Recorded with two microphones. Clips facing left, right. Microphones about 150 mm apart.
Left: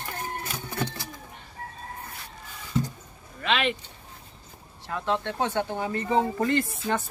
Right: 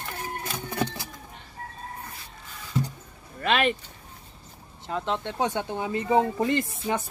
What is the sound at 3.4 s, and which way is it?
Vehicle, 45° right (ahead or behind).